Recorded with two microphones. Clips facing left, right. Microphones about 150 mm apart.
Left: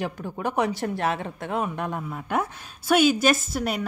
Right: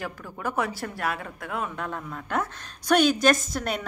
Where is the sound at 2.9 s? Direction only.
5° left (ahead or behind).